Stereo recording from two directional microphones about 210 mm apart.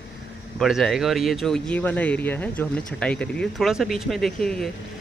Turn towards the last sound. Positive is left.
turn(degrees=0)  # may be behind; listen again after turning